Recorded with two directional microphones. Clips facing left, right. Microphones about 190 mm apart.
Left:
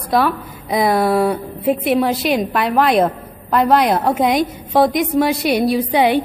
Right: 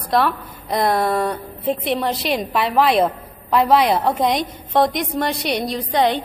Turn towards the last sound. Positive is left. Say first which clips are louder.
# left 4 dB
turn(degrees=10)  # may be behind; listen again after turning